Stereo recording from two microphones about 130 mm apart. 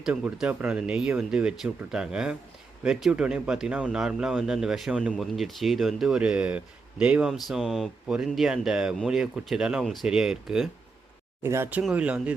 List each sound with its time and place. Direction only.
0.0 s speech: 5° right (ahead or behind)
11.4 s speech: 20° right (ahead or behind)
11.8 s speech: 10° right (ahead or behind)